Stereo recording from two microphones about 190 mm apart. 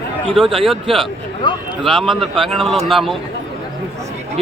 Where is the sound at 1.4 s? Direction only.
25° left (ahead or behind).